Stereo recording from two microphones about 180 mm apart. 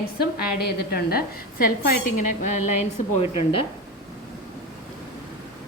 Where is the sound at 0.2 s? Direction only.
55° left (ahead or behind).